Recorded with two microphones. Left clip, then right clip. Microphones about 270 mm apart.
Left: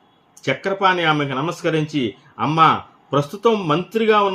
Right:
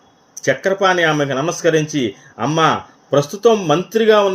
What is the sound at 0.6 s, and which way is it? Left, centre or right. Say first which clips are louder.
Speech: right 2 dB; centre.